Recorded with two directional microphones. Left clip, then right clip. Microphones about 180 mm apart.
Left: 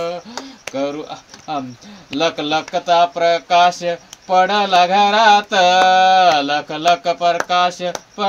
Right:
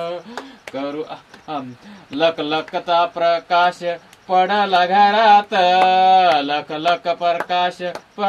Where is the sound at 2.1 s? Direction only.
50° left (ahead or behind).